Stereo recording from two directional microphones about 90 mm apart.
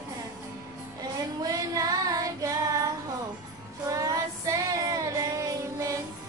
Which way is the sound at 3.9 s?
40° right (ahead or behind).